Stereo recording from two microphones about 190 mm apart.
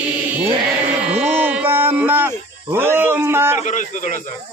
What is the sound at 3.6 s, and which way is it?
Speech, 40° left (ahead or behind).